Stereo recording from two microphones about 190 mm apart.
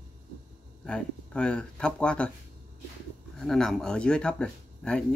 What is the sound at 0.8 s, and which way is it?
Speech, 5° left (ahead or behind).